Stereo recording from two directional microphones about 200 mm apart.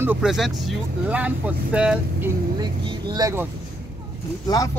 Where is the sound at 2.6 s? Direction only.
20° right (ahead or behind).